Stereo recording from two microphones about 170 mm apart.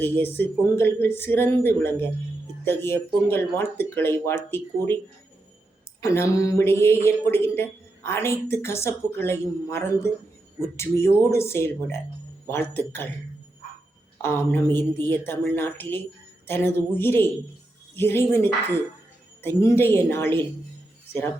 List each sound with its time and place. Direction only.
0.0 s speech: 10° left (ahead or behind)
6.0 s speech: 15° left (ahead or behind)
14.2 s speech: 15° left (ahead or behind)